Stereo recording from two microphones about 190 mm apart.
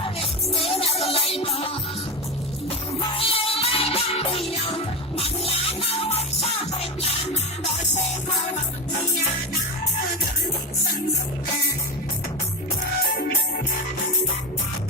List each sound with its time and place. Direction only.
0.6 s music: 30° left (ahead or behind)
3.2 s music: 30° left (ahead or behind)